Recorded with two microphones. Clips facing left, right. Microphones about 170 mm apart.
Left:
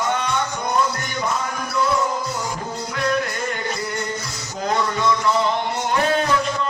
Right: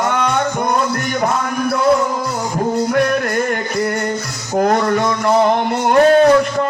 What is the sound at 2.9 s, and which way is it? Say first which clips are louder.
Music: right 7 dB; 55° right (ahead or behind).